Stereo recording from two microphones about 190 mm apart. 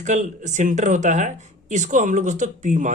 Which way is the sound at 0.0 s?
40° right (ahead or behind).